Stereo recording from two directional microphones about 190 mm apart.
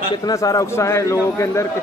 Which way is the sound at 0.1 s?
20° left (ahead or behind).